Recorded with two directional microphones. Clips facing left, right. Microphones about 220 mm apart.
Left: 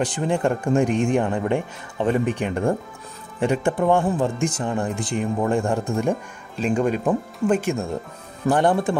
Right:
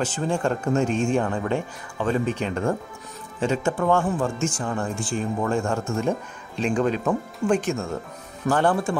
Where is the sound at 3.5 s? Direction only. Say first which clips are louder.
Left 2 dB; 15° left (ahead or behind).